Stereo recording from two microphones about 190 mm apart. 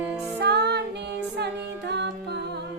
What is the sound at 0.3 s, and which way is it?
Music, 60° right (ahead or behind).